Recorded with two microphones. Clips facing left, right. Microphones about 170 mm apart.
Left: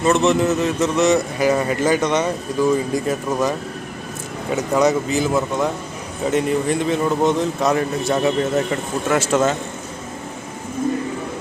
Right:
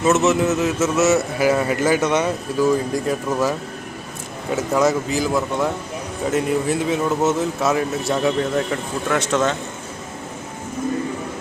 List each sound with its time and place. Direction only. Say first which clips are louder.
0.0 s a man's voice: even; 5° right (ahead or behind)
4.5 s a man's voice: left 1 dB; centre (ahead or behind)